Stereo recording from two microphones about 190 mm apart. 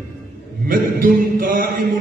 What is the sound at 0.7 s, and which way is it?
A man's voice, 50° right (ahead or behind).